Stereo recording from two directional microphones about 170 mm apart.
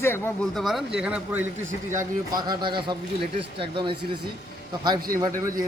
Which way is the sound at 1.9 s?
25° right (ahead or behind).